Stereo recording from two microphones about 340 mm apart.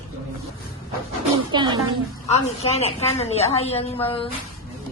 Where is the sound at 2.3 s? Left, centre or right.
Centre.